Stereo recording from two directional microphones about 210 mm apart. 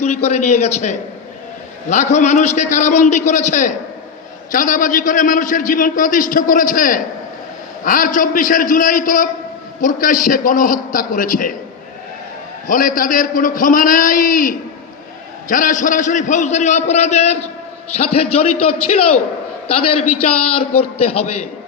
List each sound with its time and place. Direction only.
0.0 s a man's voice: 30° left (ahead or behind)
12.6 s a man's voice: 40° left (ahead or behind)
18.5 s a man's voice: 90° left
19.9 s a man's voice: 90° left